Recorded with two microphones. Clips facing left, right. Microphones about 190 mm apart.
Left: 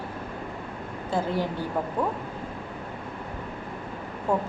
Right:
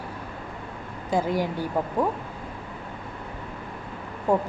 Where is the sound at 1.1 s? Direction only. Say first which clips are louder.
Right 3 dB; 15° right (ahead or behind).